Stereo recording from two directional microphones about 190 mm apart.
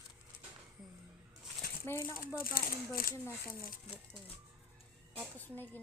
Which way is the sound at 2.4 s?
50° left (ahead or behind).